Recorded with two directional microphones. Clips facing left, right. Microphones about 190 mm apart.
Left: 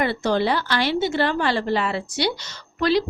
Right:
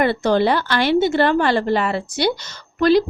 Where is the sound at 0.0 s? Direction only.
55° right (ahead or behind).